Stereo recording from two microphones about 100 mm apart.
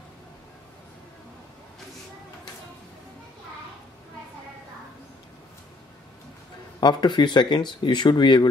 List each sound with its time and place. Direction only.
6.8 s speech: 45° left (ahead or behind)